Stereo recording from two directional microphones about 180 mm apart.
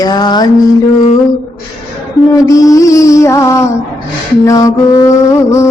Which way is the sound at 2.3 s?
20° left (ahead or behind).